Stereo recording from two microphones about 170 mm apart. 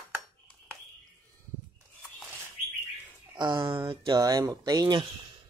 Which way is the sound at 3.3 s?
25° right (ahead or behind).